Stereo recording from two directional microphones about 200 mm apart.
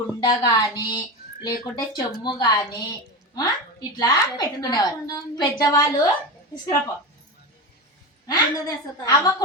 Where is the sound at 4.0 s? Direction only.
20° left (ahead or behind).